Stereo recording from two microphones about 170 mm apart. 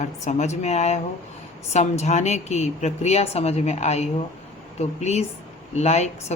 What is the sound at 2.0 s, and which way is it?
A woman's voice, 40° left (ahead or behind).